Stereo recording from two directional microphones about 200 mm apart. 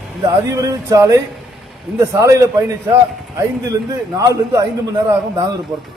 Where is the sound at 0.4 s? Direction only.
15° right (ahead or behind).